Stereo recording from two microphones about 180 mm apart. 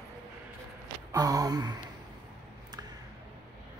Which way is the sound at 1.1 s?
20° right (ahead or behind).